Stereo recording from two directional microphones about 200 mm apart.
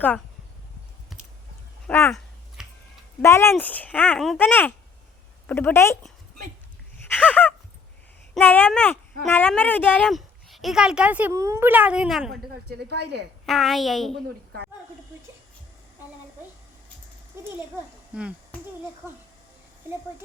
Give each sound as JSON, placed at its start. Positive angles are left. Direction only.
{"t": 1.1, "sound": "a sound", "side_deg": 0}
{"t": 3.2, "sound": "speech", "side_deg": 15}
{"t": 7.1, "sound": "speech", "side_deg": 10}
{"t": 12.6, "sound": "a woman's voice", "side_deg": -55}
{"t": 13.4, "sound": "speech", "side_deg": 0}
{"t": 18.1, "sound": "speech", "side_deg": -5}